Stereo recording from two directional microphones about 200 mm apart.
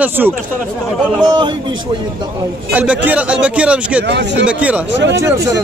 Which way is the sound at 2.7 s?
5° right (ahead or behind).